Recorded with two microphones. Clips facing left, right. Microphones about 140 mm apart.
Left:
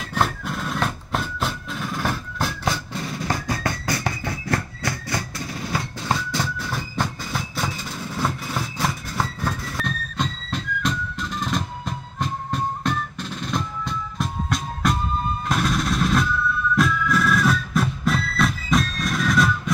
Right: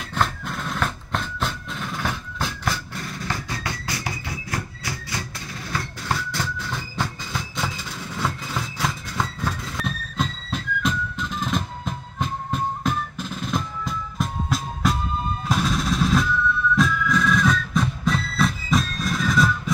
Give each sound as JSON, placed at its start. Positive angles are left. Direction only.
{"t": 0.1, "sound": "percussion", "side_deg": 5}
{"t": 0.7, "sound": "music", "side_deg": 10}
{"t": 3.3, "sound": "music", "side_deg": 45}
{"t": 6.0, "sound": "music", "side_deg": 15}